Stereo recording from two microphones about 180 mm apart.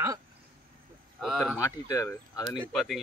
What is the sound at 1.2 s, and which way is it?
Speech, centre (ahead or behind).